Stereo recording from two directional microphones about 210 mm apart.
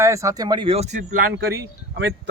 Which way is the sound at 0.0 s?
15° right (ahead or behind).